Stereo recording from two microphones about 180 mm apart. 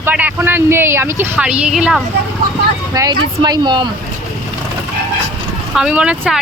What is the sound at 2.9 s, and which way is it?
Speech, 20° right (ahead or behind).